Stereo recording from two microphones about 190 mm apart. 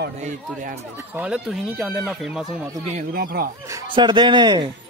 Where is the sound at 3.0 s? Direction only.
50° right (ahead or behind).